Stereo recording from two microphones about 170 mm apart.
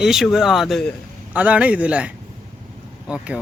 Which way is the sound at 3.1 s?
5° right (ahead or behind).